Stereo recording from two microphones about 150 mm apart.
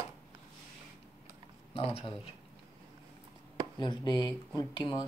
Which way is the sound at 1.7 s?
40° left (ahead or behind).